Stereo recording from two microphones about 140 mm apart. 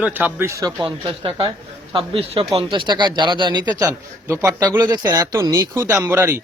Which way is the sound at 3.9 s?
20° right (ahead or behind).